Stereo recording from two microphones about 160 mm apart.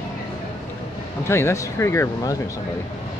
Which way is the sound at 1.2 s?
15° left (ahead or behind).